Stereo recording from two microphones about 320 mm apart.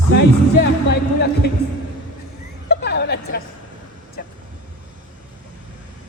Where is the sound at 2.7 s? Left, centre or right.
Left.